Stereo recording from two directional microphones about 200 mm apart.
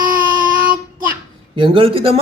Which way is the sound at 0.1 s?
45° right (ahead or behind).